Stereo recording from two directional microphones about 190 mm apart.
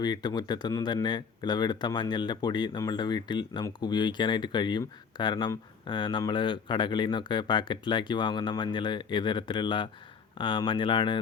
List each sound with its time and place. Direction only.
0.0 s speech: 20° left (ahead or behind)